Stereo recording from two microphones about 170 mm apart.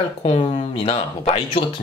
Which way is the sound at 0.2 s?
40° left (ahead or behind).